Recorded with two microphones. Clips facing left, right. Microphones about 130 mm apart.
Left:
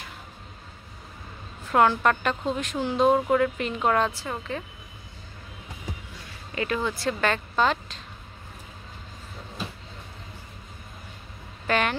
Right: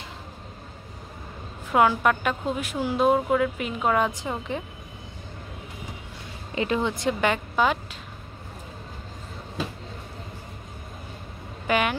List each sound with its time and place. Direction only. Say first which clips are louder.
1.7 s a woman's voice: even; 10° right (ahead or behind)
4.1 s a woman's voice: right 2 dB; 20° right (ahead or behind)
6.5 s a woman's voice: right 2 dB; 20° right (ahead or behind)
11.6 s speech: right 1 dB; 10° right (ahead or behind)